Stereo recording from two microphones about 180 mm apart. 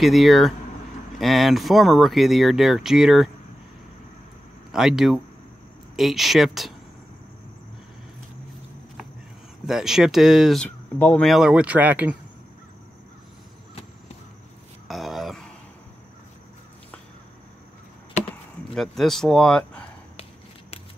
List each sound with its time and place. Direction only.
0.0 s speech: centre (ahead or behind)
4.7 s speech: centre (ahead or behind)
9.7 s speech: centre (ahead or behind)
14.9 s a sound: centre (ahead or behind)
18.8 s speech: centre (ahead or behind)